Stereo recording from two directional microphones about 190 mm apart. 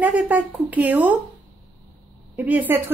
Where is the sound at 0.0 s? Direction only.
10° right (ahead or behind).